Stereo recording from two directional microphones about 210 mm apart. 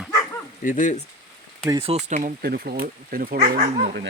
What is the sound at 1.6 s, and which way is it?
Speech, 20° right (ahead or behind).